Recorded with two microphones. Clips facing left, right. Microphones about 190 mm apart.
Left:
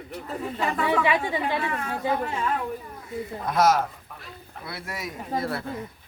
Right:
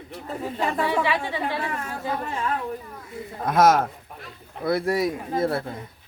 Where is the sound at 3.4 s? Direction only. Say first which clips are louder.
Right 3 dB; 50° right (ahead or behind).